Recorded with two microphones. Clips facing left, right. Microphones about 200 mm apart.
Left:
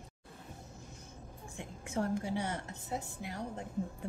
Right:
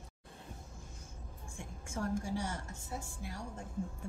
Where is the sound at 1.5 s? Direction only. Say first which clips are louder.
Left 5 dB; 65° left (ahead or behind).